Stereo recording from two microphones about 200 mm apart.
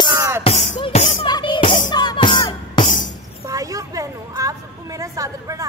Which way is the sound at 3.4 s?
15° right (ahead or behind).